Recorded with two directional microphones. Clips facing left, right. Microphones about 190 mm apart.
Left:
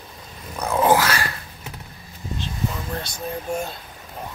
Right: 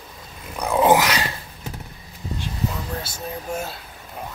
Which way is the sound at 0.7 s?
15° right (ahead or behind).